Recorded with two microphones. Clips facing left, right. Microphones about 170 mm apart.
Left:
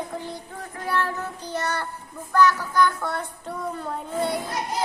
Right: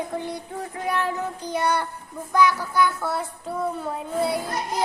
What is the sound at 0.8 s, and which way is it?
Child singing, 15° right (ahead or behind).